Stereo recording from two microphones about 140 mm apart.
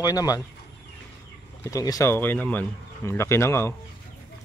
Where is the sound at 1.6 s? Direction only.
25° left (ahead or behind).